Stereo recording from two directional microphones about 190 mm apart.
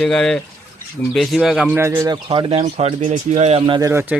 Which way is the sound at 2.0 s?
25° right (ahead or behind).